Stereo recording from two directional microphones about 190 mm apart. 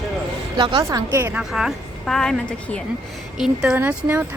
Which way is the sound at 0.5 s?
25° right (ahead or behind).